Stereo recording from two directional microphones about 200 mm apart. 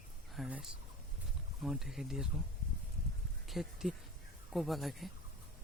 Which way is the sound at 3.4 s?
Centre (ahead or behind).